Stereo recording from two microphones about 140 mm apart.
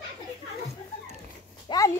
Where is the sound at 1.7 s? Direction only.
35° left (ahead or behind).